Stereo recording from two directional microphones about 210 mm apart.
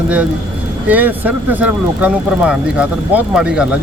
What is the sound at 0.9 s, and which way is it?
Speech, 10° right (ahead or behind).